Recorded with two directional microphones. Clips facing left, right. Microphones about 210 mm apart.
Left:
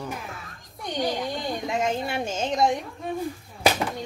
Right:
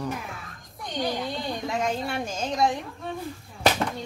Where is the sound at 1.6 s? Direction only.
20° left (ahead or behind).